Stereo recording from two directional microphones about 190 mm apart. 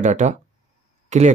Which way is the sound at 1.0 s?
40° right (ahead or behind).